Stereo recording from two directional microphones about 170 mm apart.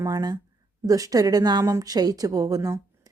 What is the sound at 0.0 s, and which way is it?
A woman's voice, 20° right (ahead or behind).